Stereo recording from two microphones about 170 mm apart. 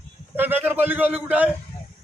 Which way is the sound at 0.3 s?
10° right (ahead or behind).